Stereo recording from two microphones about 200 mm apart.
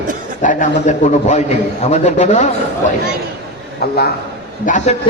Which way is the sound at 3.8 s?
50° left (ahead or behind).